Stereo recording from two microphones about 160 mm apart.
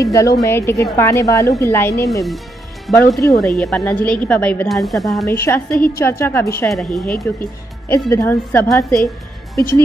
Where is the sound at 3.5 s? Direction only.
10° left (ahead or behind).